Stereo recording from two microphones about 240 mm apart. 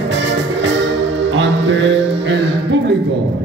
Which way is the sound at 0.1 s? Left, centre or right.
Right.